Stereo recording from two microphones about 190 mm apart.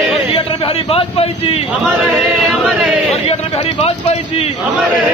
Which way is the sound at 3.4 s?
30° left (ahead or behind).